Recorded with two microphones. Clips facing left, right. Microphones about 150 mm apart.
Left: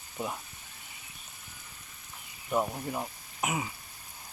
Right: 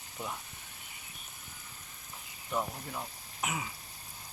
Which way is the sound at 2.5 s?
25° left (ahead or behind).